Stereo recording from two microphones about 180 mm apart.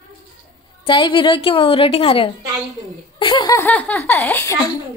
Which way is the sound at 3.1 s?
25° left (ahead or behind).